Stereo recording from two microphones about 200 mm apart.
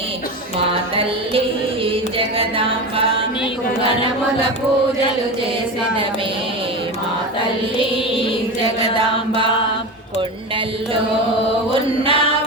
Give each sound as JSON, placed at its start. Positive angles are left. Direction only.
{"t": 0.7, "sound": "music", "side_deg": -25}
{"t": 9.0, "sound": "chant", "side_deg": -25}
{"t": 11.7, "sound": "chant", "side_deg": -25}